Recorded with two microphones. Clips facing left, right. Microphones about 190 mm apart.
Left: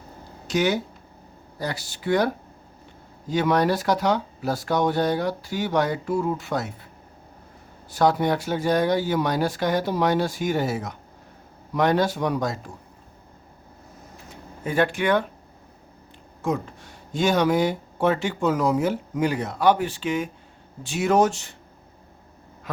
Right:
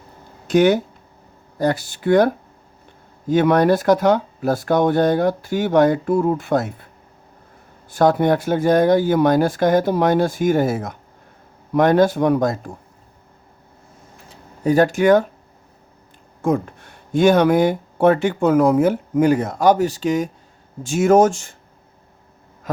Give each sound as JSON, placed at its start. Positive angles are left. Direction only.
{"t": 0.4, "sound": "speech", "side_deg": -55}
{"t": 7.9, "sound": "speech", "side_deg": -50}
{"t": 14.3, "sound": "speech", "side_deg": -40}
{"t": 16.4, "sound": "speech", "side_deg": -55}